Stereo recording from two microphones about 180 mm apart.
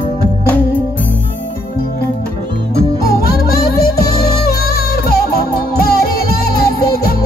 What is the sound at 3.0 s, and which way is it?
Music, 55° left (ahead or behind).